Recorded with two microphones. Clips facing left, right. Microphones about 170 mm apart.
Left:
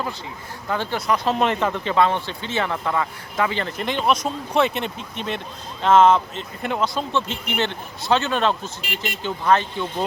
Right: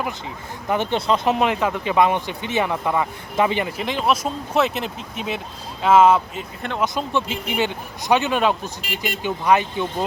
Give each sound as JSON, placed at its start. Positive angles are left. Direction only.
{"t": 0.7, "sound": "speech", "side_deg": -20}
{"t": 1.4, "sound": "speech", "side_deg": -5}